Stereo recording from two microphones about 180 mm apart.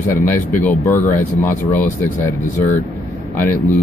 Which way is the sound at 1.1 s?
45° left (ahead or behind).